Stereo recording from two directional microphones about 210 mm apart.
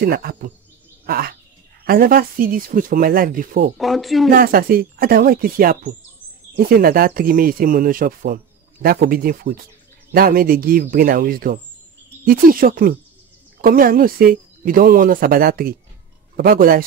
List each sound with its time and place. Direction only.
0.0 s speech: 45° right (ahead or behind)
1.0 s bird: 45° right (ahead or behind)
1.9 s speech: 45° right (ahead or behind)
3.7 s speech: centre (ahead or behind)
4.3 s speech: 45° right (ahead or behind)